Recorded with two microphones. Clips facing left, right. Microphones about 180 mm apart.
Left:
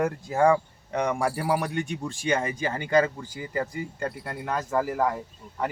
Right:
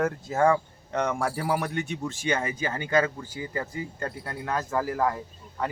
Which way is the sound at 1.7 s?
10° left (ahead or behind).